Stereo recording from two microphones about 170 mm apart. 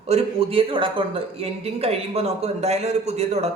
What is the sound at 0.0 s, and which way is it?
Speech, 40° right (ahead or behind).